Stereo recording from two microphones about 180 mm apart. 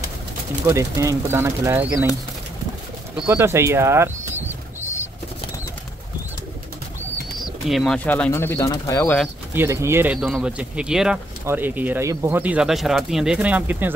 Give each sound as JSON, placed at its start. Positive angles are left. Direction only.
{"t": 0.7, "sound": "speech", "side_deg": -15}
{"t": 3.3, "sound": "speech", "side_deg": -15}
{"t": 7.3, "sound": "speech", "side_deg": 0}
{"t": 9.5, "sound": "speech", "side_deg": -15}